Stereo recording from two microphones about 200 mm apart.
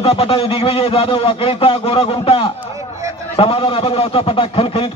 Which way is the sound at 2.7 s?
15° right (ahead or behind).